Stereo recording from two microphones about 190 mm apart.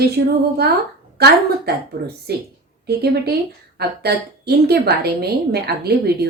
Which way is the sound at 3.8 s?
55° right (ahead or behind).